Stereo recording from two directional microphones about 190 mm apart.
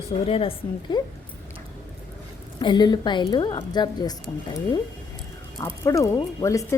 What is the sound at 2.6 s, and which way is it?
A woman's voice, 25° left (ahead or behind).